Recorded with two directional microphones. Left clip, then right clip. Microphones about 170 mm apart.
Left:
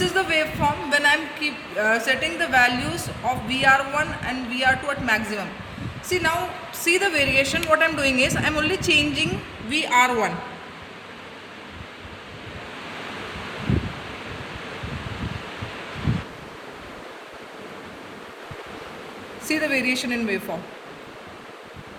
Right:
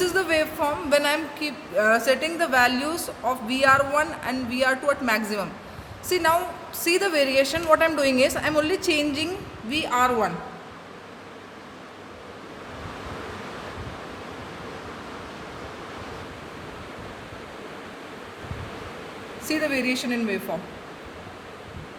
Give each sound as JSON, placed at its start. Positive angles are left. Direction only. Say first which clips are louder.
{"t": 0.0, "sound": "a man's voice", "louder": "left 1 dB", "side_deg": -35}
{"t": 9.6, "sound": "speech", "louder": "left 3 dB", "side_deg": -10}
{"t": 19.5, "sound": "speech", "louder": "left 2 dB", "side_deg": -5}